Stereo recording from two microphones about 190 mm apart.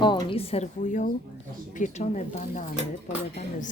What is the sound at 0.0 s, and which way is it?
A woman's voice, 25° left (ahead or behind).